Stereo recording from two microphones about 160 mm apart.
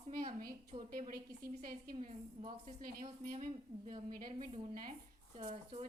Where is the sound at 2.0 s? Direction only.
35° right (ahead or behind).